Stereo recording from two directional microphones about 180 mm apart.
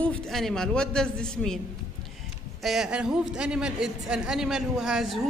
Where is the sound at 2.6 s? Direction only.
Centre (ahead or behind).